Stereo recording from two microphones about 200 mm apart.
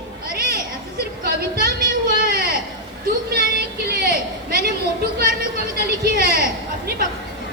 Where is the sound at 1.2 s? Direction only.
50° right (ahead or behind).